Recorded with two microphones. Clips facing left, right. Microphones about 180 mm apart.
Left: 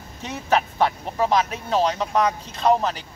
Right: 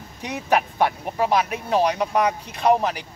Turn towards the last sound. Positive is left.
turn(degrees=-15)  # may be behind; listen again after turning